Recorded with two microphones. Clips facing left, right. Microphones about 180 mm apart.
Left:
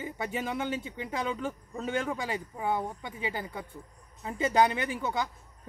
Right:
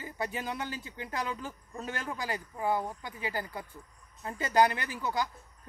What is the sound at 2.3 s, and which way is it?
Speech, 25° left (ahead or behind).